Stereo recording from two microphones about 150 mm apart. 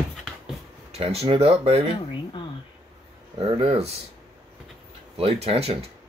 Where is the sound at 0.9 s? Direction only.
45° right (ahead or behind).